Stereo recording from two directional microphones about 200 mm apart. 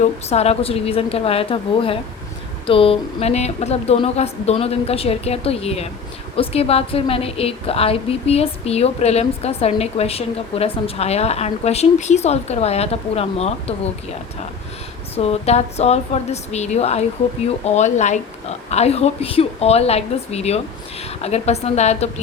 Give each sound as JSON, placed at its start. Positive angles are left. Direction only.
{"t": 0.0, "sound": "a woman's voice", "side_deg": 30}
{"t": 15.1, "sound": "a woman's voice", "side_deg": 30}